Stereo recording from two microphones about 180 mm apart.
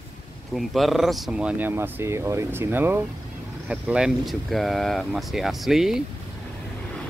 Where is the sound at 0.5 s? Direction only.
Centre (ahead or behind).